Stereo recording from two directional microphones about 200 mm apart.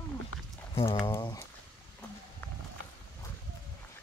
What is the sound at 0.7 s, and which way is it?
Speech, 30° left (ahead or behind).